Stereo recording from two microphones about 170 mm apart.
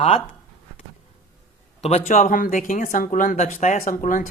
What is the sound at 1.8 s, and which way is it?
Speech, 40° left (ahead or behind).